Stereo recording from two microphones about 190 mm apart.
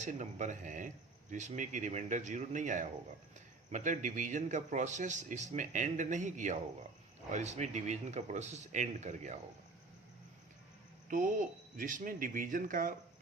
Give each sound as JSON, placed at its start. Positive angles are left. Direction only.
{"t": 0.0, "sound": "a man's voice", "side_deg": -40}
{"t": 11.1, "sound": "speech", "side_deg": -45}